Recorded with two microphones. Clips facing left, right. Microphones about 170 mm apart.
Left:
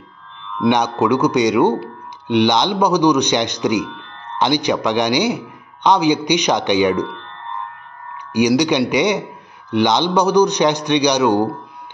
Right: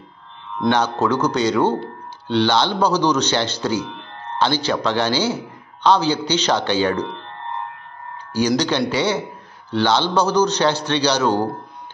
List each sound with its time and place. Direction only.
0.7 s speech: 15° left (ahead or behind)
8.3 s speech: 15° left (ahead or behind)